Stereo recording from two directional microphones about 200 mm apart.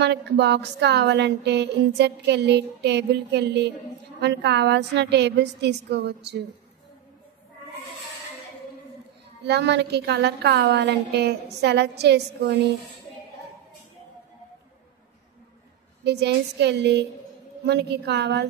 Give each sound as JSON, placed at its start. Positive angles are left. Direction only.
{"t": 0.0, "sound": "a woman's voice", "side_deg": -55}
{"t": 9.5, "sound": "a woman's voice", "side_deg": -60}
{"t": 16.0, "sound": "a woman's voice", "side_deg": -55}